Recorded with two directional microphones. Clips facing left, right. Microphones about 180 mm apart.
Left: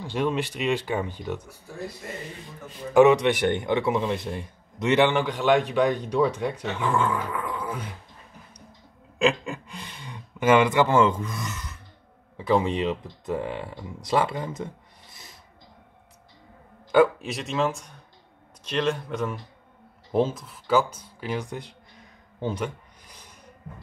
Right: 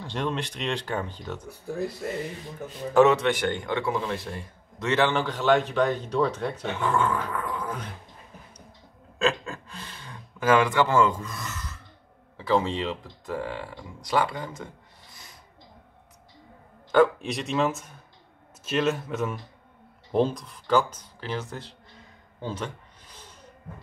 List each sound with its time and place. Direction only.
0.0 s a man's voice: 10° left (ahead or behind)
2.9 s a man's voice: 15° left (ahead or behind)
9.2 s speech: 15° left (ahead or behind)
16.9 s a man's voice: 5° left (ahead or behind)
22.4 s a sound: 15° left (ahead or behind)